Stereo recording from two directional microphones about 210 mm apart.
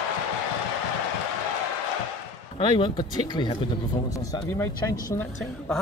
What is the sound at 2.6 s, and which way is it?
Speech, 25° left (ahead or behind).